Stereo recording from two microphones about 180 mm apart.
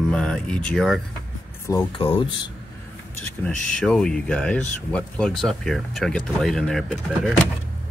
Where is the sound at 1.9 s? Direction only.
30° left (ahead or behind).